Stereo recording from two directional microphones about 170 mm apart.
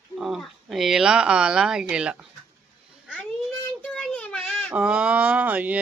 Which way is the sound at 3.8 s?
5° left (ahead or behind).